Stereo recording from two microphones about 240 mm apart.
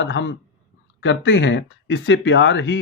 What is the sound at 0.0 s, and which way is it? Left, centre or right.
Speech, left.